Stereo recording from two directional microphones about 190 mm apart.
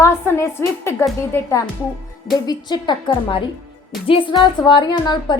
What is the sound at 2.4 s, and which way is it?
Speech, 20° left (ahead or behind).